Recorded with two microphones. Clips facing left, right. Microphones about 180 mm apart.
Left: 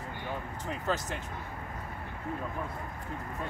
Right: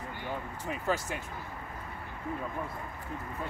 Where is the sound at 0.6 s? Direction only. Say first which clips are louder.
Right 1 dB; 10° right (ahead or behind).